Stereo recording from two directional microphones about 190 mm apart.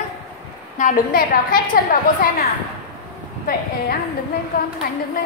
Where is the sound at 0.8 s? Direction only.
50° left (ahead or behind).